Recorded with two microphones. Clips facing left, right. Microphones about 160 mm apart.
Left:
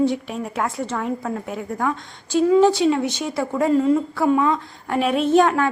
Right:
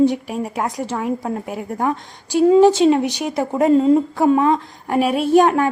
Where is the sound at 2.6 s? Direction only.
20° right (ahead or behind).